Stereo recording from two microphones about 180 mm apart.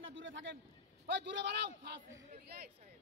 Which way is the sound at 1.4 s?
70° right (ahead or behind).